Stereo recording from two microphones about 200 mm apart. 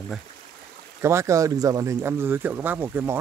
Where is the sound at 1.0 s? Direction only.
15° right (ahead or behind).